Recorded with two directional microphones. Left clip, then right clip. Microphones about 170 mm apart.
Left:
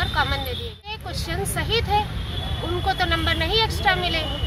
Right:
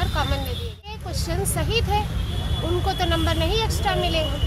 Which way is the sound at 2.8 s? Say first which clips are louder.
Left 3 dB; 5° right (ahead or behind).